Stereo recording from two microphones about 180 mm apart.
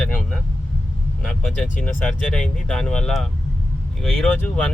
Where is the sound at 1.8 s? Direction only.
5° left (ahead or behind).